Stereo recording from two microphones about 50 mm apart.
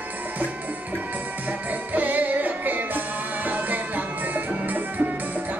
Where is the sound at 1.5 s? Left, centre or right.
Right.